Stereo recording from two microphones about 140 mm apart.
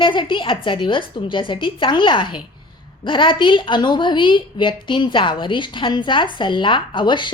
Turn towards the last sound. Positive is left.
turn(degrees=35)  # may be behind; listen again after turning